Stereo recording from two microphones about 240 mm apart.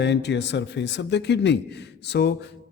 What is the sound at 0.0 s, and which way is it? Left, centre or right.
A man's voice, left.